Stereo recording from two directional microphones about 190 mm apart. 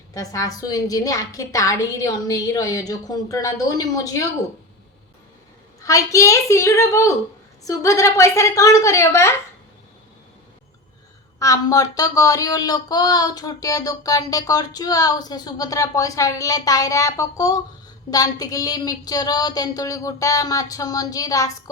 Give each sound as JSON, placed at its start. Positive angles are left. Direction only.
{"t": 0.1, "sound": "a woman's voice", "side_deg": 20}
{"t": 5.8, "sound": "a woman's voice", "side_deg": 15}
{"t": 11.3, "sound": "speech", "side_deg": 15}